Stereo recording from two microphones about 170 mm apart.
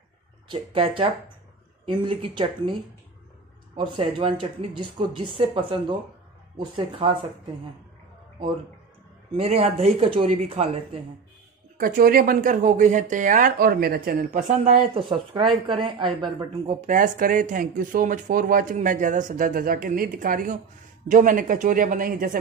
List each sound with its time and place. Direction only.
0.5 s speech: 30° right (ahead or behind)
3.7 s speech: 30° right (ahead or behind)
9.3 s speech: 35° right (ahead or behind)
11.8 s speech: 60° right (ahead or behind); by 16.7 s 30° right (ahead or behind)
16.8 s speech: 50° right (ahead or behind)